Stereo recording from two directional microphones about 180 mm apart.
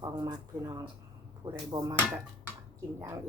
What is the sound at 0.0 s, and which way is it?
Speech, 25° right (ahead or behind).